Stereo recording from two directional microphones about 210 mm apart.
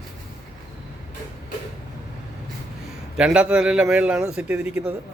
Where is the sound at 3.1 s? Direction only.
5° right (ahead or behind).